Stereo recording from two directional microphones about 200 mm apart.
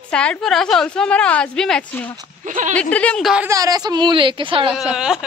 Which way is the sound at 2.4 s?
40° right (ahead or behind).